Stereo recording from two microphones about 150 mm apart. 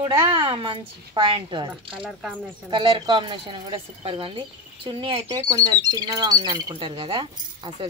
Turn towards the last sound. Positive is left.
turn(degrees=-35)  # may be behind; listen again after turning